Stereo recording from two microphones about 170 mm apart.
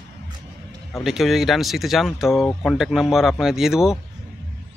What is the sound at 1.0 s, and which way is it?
Speech, centre (ahead or behind).